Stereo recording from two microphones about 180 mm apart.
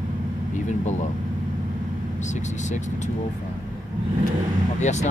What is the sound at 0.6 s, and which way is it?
Speech, 40° left (ahead or behind).